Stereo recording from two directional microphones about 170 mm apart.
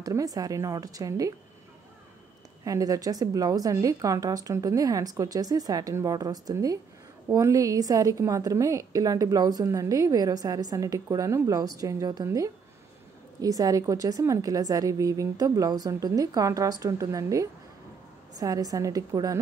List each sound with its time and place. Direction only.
0.0 s a woman's voice: 20° right (ahead or behind)
2.6 s a woman's voice: 20° right (ahead or behind)